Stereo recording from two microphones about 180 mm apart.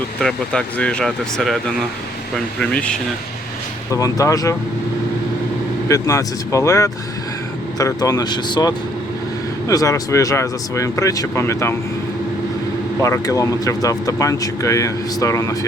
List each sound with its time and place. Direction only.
0.2 s speech: 5° left (ahead or behind)
2.6 s speech: 5° left (ahead or behind)
3.9 s speech: 15° left (ahead or behind)
5.9 s speech: 20° left (ahead or behind)
13.0 s speech: 20° left (ahead or behind)